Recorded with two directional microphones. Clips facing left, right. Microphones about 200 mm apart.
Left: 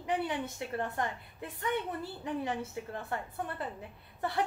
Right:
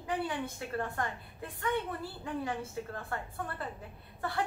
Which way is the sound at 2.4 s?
20° left (ahead or behind).